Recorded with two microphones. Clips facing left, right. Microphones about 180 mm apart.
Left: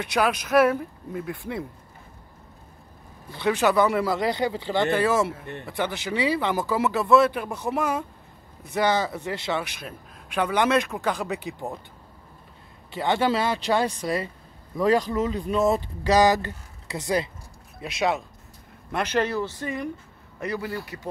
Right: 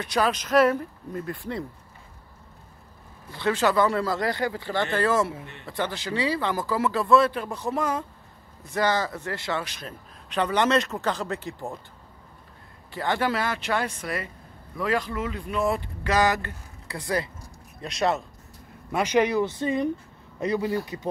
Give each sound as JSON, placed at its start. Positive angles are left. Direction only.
{"t": 0.0, "sound": "a man's voice", "side_deg": 10}
{"t": 3.3, "sound": "a man's voice", "side_deg": 15}
{"t": 12.9, "sound": "speech", "side_deg": 20}
{"t": 17.7, "sound": "speech", "side_deg": 5}
{"t": 18.9, "sound": "a man's voice", "side_deg": -10}